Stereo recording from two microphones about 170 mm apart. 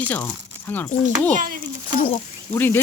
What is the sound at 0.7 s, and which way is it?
Speech, 10° left (ahead or behind).